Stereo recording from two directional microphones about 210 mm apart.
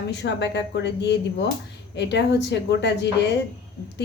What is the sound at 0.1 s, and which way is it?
Speech, 55° left (ahead or behind).